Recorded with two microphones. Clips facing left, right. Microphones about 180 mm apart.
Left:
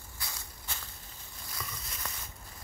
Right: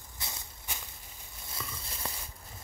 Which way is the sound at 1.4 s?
25° right (ahead or behind).